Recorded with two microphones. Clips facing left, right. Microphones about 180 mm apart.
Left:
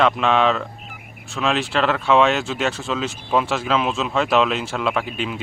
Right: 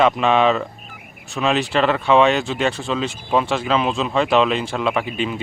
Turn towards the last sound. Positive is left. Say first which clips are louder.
# right 2 dB
turn(degrees=0)  # may be behind; listen again after turning